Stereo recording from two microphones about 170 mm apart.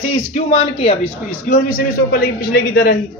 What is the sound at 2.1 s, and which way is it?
Speech, 65° left (ahead or behind).